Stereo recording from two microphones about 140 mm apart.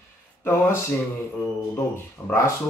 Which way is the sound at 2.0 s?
20° left (ahead or behind).